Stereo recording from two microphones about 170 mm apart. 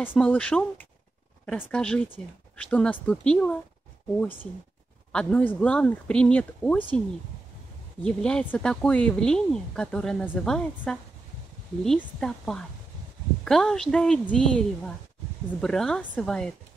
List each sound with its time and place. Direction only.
0.0 s speech: 10° left (ahead or behind)
8.0 s speech: 5° left (ahead or behind)